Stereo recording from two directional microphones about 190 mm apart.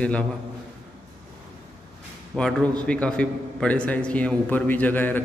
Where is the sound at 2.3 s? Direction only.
5° left (ahead or behind).